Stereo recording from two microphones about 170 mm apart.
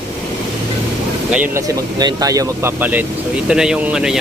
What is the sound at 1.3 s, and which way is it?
Speech, 10° right (ahead or behind).